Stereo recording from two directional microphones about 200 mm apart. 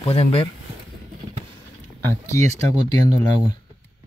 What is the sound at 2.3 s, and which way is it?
Speech, 35° right (ahead or behind).